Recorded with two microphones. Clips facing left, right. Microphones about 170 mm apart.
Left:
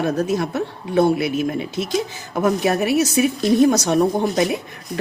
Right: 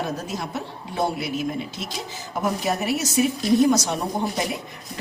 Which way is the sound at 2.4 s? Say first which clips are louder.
Left 6 dB; 65° left (ahead or behind).